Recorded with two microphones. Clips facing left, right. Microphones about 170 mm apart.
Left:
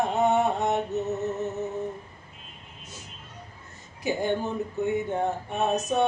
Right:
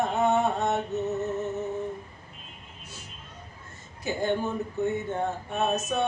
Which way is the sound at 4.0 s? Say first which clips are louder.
Left 2 dB; 15° left (ahead or behind).